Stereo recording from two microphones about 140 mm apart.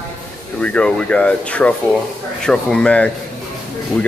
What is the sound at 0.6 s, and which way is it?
Speech, 5° left (ahead or behind).